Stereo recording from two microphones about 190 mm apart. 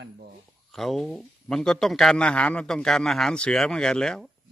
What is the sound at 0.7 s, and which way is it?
A man's voice, centre (ahead or behind).